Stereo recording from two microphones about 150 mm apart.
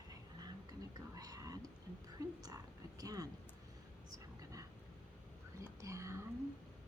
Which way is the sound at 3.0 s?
25° right (ahead or behind).